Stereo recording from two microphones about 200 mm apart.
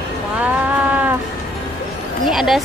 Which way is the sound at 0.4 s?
10° right (ahead or behind).